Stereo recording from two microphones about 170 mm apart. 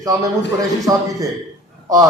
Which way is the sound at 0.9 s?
20° right (ahead or behind).